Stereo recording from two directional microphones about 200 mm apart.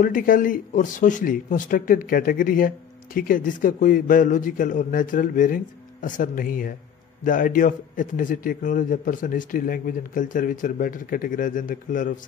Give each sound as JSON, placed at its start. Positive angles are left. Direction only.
{"t": 0.0, "sound": "a man's voice", "side_deg": 45}